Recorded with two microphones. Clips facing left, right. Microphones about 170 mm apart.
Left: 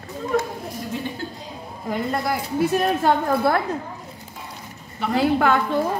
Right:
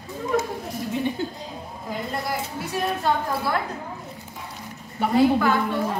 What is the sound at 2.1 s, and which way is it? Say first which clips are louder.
A woman's voice: left 3 dB; 60° left (ahead or behind).